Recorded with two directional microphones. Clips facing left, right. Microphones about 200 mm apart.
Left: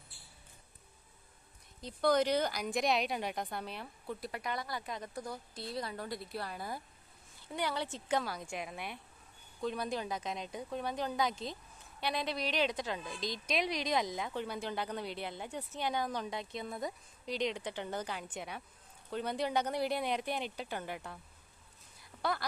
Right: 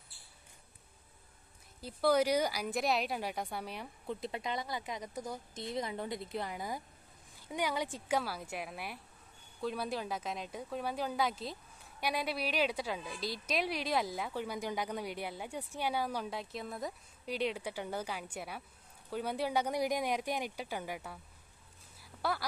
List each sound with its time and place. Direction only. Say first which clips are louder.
1.8 s a woman's voice: right 1 dB; 5° right (ahead or behind)
22.2 s a woman's voice: even; 5° right (ahead or behind)